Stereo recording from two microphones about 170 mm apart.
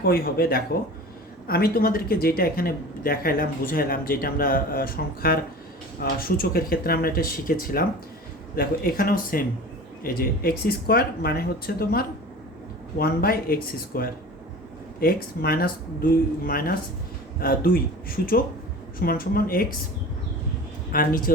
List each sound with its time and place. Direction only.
0.0 s speech: 65° left (ahead or behind)
18.9 s speech: 55° left (ahead or behind)
20.9 s speech: 55° left (ahead or behind)